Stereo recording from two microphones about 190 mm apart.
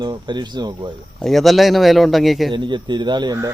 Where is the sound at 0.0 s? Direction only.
25° right (ahead or behind).